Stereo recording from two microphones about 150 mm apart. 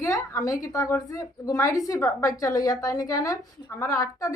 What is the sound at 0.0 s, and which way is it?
A woman's voice, 20° left (ahead or behind).